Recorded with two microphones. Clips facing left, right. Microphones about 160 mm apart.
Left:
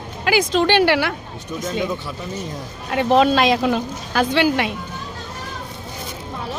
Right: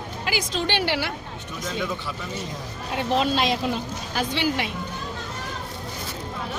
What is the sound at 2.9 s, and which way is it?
A woman's voice, 70° left (ahead or behind).